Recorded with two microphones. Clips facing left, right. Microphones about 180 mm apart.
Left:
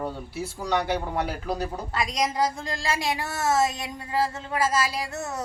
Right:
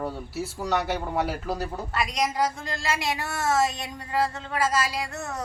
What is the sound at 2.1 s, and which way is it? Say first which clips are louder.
Speech: left 1 dB; 35° left (ahead or behind).